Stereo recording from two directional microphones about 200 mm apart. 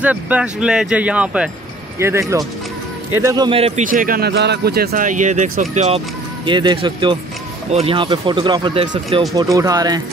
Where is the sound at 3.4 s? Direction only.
30° right (ahead or behind).